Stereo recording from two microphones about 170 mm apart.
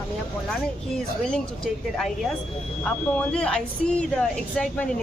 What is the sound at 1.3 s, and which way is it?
Speech, centre (ahead or behind).